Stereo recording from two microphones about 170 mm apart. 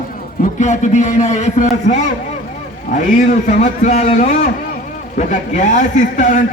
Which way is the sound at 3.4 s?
50° left (ahead or behind).